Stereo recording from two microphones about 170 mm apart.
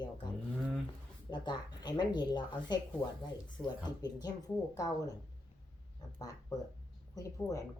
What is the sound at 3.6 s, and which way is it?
Speech, 15° left (ahead or behind).